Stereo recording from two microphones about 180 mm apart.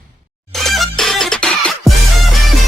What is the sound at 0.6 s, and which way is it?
Music, centre (ahead or behind).